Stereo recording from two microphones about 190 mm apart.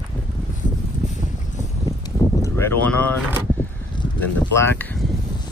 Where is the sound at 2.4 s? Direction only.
15° left (ahead or behind).